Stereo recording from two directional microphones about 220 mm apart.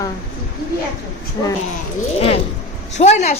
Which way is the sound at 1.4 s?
15° left (ahead or behind).